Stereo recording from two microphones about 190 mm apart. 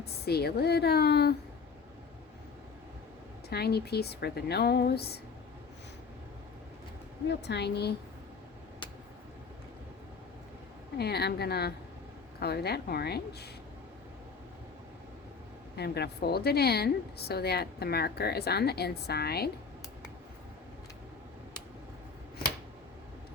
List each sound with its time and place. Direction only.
0.0 s a woman's voice: 55° left (ahead or behind)
3.5 s a woman's voice: 55° left (ahead or behind)
7.3 s a woman's voice: 65° left (ahead or behind)
10.9 s a woman's voice: 55° left (ahead or behind)
15.7 s a woman's voice: 60° left (ahead or behind)